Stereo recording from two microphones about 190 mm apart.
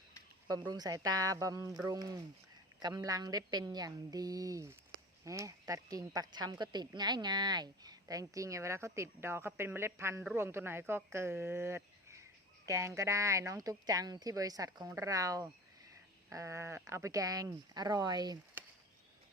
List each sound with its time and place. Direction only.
0.4 s a woman's voice: 20° right (ahead or behind)